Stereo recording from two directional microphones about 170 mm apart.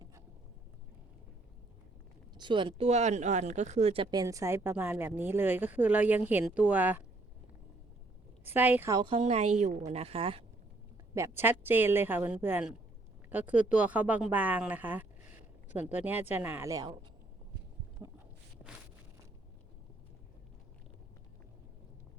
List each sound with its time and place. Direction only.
2.3 s a woman's voice: 25° right (ahead or behind); by 7.0 s 10° right (ahead or behind)
8.5 s a woman's voice: 10° right (ahead or behind)
9.1 s a woman's voice: 40° right (ahead or behind)
11.1 s a woman's voice: 15° right (ahead or behind)